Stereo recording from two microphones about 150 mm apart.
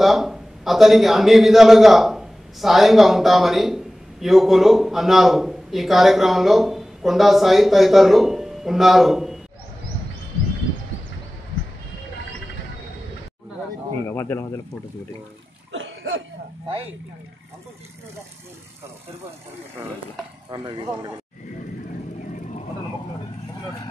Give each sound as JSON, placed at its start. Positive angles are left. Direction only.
{"t": 0.0, "sound": "a man's voice", "side_deg": 0}
{"t": 14.0, "sound": "speech", "side_deg": 20}
{"t": 16.6, "sound": "speech", "side_deg": -40}
{"t": 20.5, "sound": "speech", "side_deg": -30}